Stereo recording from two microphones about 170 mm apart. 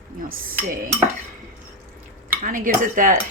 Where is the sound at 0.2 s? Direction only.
55° right (ahead or behind).